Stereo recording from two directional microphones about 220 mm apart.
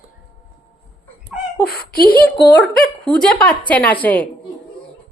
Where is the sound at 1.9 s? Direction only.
40° left (ahead or behind).